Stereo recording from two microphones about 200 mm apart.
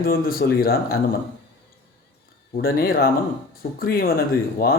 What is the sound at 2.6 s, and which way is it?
Speech, 50° left (ahead or behind).